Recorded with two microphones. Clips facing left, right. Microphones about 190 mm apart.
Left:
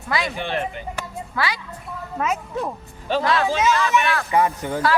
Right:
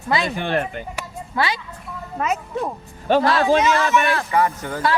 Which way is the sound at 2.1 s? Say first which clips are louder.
Right 1 dB; centre (ahead or behind).